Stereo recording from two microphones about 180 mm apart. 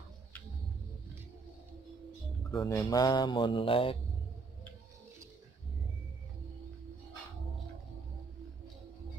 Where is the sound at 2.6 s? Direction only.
20° left (ahead or behind).